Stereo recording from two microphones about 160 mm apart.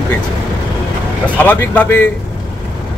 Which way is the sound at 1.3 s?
10° left (ahead or behind).